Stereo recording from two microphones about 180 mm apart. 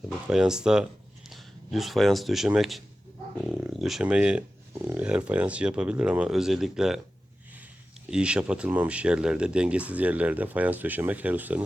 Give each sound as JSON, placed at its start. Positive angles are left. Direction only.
{"t": 0.3, "sound": "speech", "side_deg": -5}
{"t": 8.1, "sound": "speech", "side_deg": -5}